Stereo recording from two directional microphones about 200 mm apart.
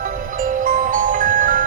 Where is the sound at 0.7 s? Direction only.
40° right (ahead or behind).